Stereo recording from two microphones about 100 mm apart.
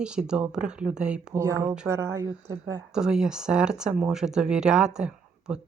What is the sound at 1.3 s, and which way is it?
Speech, 30° right (ahead or behind).